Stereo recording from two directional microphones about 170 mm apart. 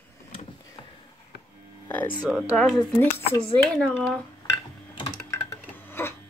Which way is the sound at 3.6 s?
5° left (ahead or behind).